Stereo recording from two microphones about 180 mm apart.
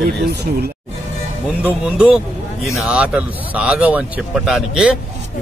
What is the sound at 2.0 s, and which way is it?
Speech, 5° right (ahead or behind).